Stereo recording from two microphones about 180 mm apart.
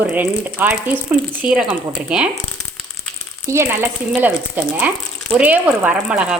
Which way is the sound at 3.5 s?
15° right (ahead or behind).